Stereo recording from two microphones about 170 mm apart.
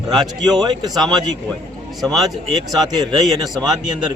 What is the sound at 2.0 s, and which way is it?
Speech, centre (ahead or behind).